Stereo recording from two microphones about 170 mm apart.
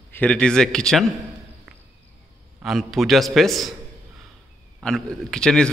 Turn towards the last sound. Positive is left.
turn(degrees=5)  # may be behind; listen again after turning